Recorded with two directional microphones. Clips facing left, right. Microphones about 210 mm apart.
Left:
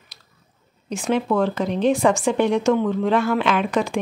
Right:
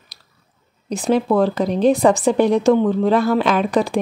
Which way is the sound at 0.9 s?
35° right (ahead or behind).